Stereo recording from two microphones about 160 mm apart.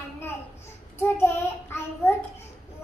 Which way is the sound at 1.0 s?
15° left (ahead or behind).